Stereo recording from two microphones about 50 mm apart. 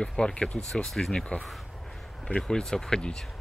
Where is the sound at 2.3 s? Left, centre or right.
Centre.